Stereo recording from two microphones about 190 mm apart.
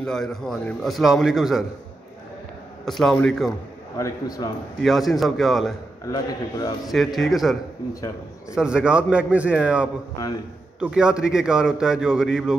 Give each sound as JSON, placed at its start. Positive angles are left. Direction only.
{"t": 0.0, "sound": "a man's voice", "side_deg": 0}
{"t": 2.8, "sound": "a man's voice", "side_deg": 0}
{"t": 4.0, "sound": "a man's voice", "side_deg": 20}
{"t": 4.8, "sound": "a man's voice", "side_deg": 0}
{"t": 6.0, "sound": "a man's voice", "side_deg": 20}
{"t": 6.9, "sound": "a man's voice", "side_deg": 0}
{"t": 8.5, "sound": "a man's voice", "side_deg": -5}
{"t": 10.1, "sound": "a man's voice", "side_deg": 20}
{"t": 10.8, "sound": "a man's voice", "side_deg": -5}